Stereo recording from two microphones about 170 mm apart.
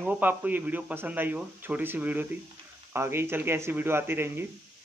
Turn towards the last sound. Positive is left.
turn(degrees=-15)  # may be behind; listen again after turning